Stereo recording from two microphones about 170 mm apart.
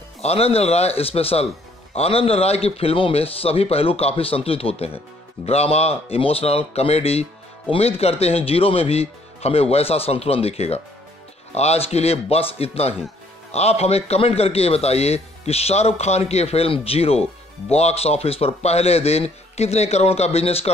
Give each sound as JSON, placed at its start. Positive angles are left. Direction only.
{"t": 0.2, "sound": "a man's voice", "side_deg": 35}